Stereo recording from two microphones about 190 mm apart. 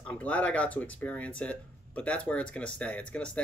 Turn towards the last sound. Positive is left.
turn(degrees=5)  # may be behind; listen again after turning